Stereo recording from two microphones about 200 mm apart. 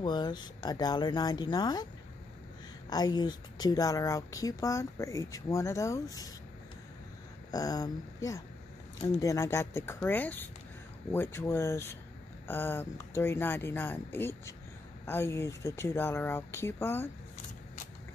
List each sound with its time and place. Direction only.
0.0 s speech: 20° left (ahead or behind)
2.9 s speech: 20° left (ahead or behind)
7.5 s speech: 20° left (ahead or behind)